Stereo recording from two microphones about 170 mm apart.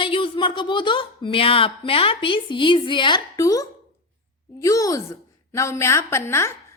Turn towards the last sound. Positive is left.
turn(degrees=15)  # may be behind; listen again after turning